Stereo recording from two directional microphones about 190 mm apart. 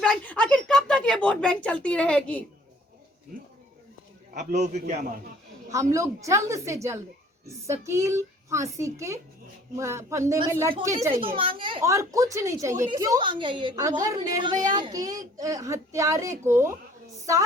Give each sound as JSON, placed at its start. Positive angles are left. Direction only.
{"t": 0.0, "sound": "a sound", "side_deg": 5}
{"t": 4.4, "sound": "a man's voice", "side_deg": -40}
{"t": 5.7, "sound": "a woman's voice", "side_deg": -15}
{"t": 11.3, "sound": "a woman's voice", "side_deg": -25}
{"t": 11.8, "sound": "a woman's voice", "side_deg": -15}